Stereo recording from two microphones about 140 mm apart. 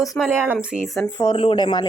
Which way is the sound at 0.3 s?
15° right (ahead or behind).